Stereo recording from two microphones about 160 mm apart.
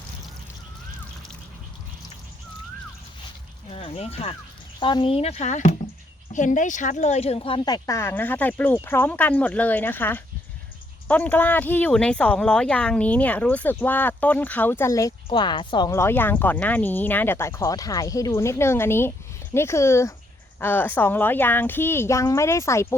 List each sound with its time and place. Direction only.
3.7 s speech: 40° left (ahead or behind)
15.9 s speech: 15° left (ahead or behind)